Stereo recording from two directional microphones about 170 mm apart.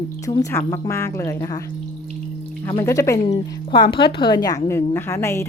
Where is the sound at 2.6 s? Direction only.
20° left (ahead or behind).